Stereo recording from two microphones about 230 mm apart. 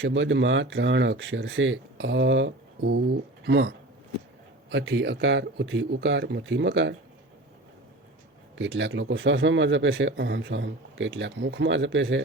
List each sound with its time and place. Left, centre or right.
0.0 s speech: right
8.5 s speech: right